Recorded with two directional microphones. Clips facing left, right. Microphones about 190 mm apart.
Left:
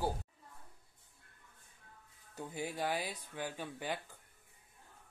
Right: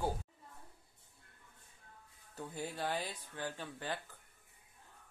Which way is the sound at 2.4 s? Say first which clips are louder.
Left 2 dB; 15° left (ahead or behind).